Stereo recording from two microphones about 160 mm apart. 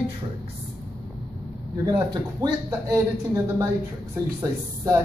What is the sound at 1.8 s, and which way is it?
Speech, 25° right (ahead or behind).